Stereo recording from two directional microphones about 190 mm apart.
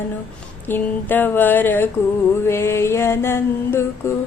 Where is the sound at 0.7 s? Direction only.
10° left (ahead or behind).